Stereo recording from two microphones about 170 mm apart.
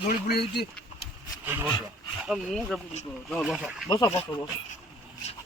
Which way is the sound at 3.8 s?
20° left (ahead or behind).